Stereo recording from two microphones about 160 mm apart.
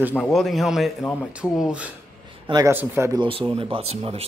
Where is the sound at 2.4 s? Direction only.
25° right (ahead or behind).